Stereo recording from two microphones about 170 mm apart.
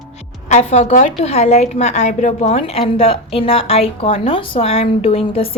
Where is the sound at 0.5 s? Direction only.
40° left (ahead or behind).